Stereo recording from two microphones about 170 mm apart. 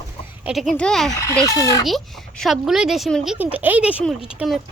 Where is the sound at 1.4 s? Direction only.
20° left (ahead or behind).